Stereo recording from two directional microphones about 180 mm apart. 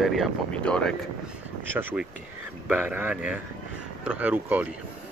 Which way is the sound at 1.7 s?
10° right (ahead or behind).